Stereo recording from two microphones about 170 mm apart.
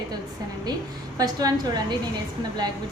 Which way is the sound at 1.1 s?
20° right (ahead or behind).